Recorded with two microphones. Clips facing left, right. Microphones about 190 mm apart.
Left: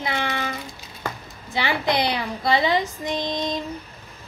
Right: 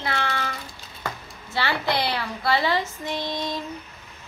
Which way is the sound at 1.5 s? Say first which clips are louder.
Left 2 dB; 15° left (ahead or behind).